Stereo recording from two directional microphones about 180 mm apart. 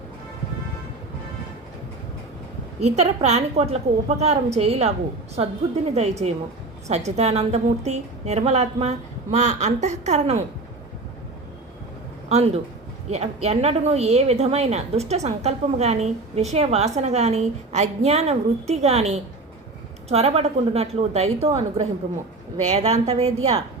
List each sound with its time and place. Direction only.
2.8 s a woman's voice: 35° right (ahead or behind)
12.3 s a woman's voice: 35° right (ahead or behind)